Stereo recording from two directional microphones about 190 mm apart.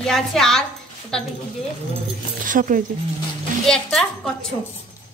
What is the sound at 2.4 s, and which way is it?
Speech, 45° right (ahead or behind).